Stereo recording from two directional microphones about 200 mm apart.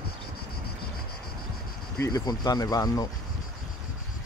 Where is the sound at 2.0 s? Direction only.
20° left (ahead or behind).